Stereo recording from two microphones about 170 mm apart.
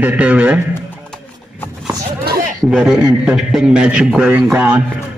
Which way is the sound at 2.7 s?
5° right (ahead or behind).